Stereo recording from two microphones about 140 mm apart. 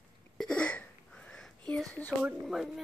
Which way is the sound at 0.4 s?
5° left (ahead or behind).